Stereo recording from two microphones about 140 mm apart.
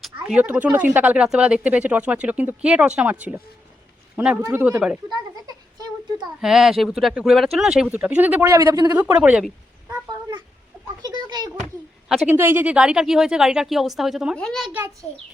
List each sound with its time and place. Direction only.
0.0 s speech: 5° right (ahead or behind)
6.4 s speech: 5° right (ahead or behind)
8.5 s speech: 25° right (ahead or behind)
9.0 s speech: 10° right (ahead or behind)
10.1 s a sound: 30° right (ahead or behind)
12.0 s a woman's voice: centre (ahead or behind)
12.3 s speech: 15° right (ahead or behind); by 14.7 s 5° left (ahead or behind)